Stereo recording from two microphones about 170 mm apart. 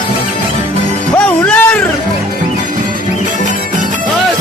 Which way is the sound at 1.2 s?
10° left (ahead or behind).